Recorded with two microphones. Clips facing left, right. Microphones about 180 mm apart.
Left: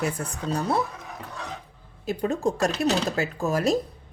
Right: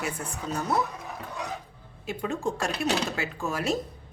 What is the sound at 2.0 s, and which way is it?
Speech, 40° left (ahead or behind).